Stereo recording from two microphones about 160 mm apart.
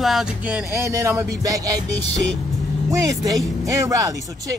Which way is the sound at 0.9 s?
20° right (ahead or behind).